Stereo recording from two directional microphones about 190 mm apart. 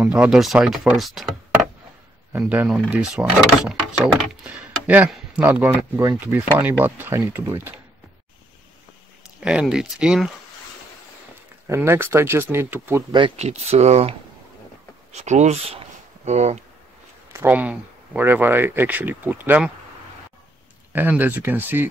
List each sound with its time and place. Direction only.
0.0 s speech: 5° right (ahead or behind)
2.3 s speech: 10° right (ahead or behind)
9.4 s speech: 5° right (ahead or behind)
11.6 s speech: 15° right (ahead or behind)
13.1 s speech: 30° right (ahead or behind)
15.2 s speech: 35° right (ahead or behind)
17.3 s speech: 10° right (ahead or behind)
20.9 s speech: 10° right (ahead or behind)